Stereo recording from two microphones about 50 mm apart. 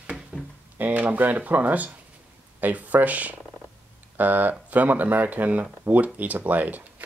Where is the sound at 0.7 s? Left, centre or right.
Right.